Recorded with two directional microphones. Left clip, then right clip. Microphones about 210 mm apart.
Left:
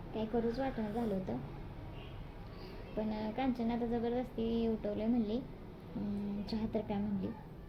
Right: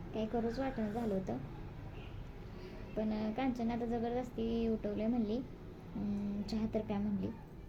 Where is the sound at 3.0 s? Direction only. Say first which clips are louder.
Even; 20° right (ahead or behind).